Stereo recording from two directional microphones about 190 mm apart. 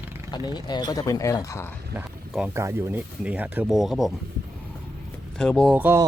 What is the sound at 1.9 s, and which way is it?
Speech, 10° right (ahead or behind).